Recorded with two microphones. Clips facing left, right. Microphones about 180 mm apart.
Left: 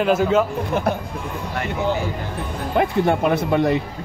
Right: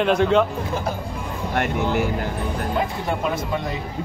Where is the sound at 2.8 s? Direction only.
60° left (ahead or behind).